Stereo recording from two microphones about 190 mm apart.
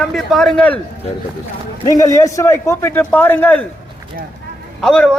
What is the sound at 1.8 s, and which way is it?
A man's voice, 20° left (ahead or behind).